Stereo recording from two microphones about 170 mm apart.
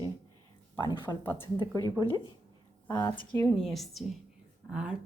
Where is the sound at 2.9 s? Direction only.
20° left (ahead or behind).